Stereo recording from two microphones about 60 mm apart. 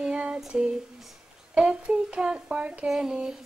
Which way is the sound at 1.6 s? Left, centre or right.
Centre.